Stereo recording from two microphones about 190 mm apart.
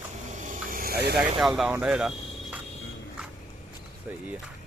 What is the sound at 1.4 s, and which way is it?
Speech, centre (ahead or behind).